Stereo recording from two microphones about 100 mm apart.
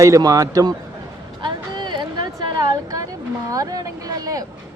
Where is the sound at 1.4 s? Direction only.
50° right (ahead or behind).